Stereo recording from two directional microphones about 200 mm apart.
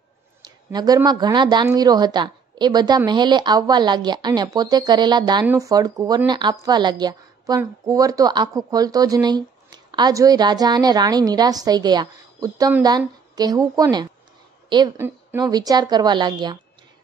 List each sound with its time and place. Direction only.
0.4 s a woman's voice: 20° right (ahead or behind)